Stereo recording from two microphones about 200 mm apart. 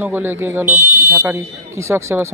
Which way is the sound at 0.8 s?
45° right (ahead or behind).